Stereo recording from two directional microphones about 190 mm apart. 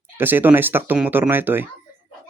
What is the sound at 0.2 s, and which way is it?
Speech, 10° right (ahead or behind).